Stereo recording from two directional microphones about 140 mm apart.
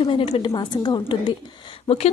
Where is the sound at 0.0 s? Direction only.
45° left (ahead or behind).